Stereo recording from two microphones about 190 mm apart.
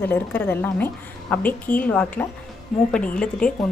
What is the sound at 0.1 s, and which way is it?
A woman's voice, 10° left (ahead or behind).